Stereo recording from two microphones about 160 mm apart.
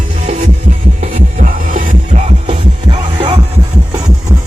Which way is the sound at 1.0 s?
55° right (ahead or behind).